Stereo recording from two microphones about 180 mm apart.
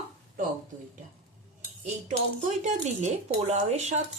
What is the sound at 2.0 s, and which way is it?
Speech, 40° right (ahead or behind).